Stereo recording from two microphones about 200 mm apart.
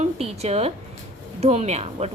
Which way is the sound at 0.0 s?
30° right (ahead or behind).